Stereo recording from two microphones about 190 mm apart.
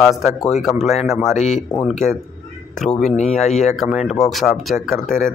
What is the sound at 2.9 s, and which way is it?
Speech, 35° left (ahead or behind).